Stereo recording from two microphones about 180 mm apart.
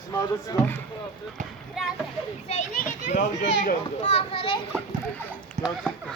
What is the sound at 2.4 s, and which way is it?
Children playing, 40° left (ahead or behind).